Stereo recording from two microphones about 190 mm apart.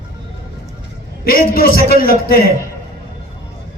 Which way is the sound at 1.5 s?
55° left (ahead or behind).